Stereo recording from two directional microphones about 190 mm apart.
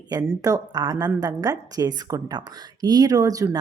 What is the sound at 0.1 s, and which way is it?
Speech, 20° right (ahead or behind).